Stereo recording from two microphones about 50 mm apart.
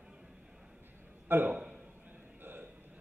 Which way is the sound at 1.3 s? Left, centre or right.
Right.